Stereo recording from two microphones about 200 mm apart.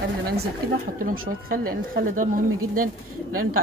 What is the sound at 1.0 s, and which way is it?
Speech, 45° right (ahead or behind).